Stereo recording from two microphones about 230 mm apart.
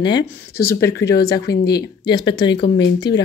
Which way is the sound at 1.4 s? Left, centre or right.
Left.